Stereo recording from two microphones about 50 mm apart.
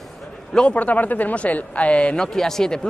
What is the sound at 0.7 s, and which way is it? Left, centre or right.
Speech, left.